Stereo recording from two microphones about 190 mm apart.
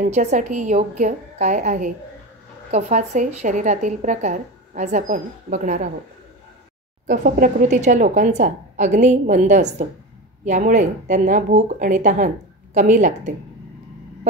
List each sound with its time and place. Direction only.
0.1 s a woman's voice: 35° right (ahead or behind)
7.1 s a woman's voice: 45° right (ahead or behind)